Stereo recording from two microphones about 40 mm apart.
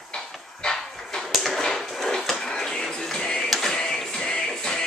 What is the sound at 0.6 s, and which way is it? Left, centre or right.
Dog, centre.